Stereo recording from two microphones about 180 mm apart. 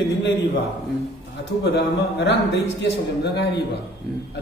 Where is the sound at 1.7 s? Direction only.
75° left (ahead or behind).